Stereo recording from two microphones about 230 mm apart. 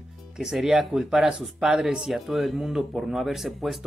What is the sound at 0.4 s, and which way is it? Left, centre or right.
Speech, centre.